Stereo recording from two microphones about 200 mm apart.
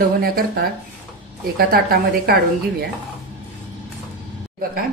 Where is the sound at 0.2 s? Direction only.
45° right (ahead or behind).